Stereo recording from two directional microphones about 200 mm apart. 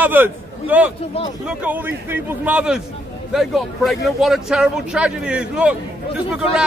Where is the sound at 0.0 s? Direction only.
10° right (ahead or behind).